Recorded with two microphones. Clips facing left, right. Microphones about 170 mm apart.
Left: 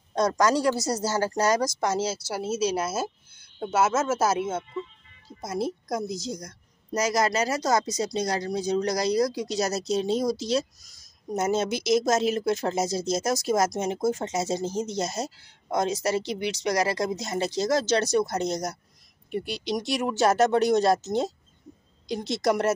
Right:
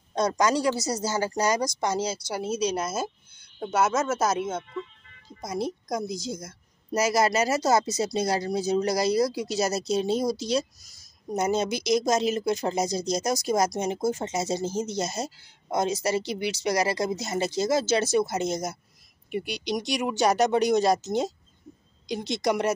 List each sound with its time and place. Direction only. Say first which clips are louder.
0.4 s a woman's voice: left 1 dB; centre (ahead or behind)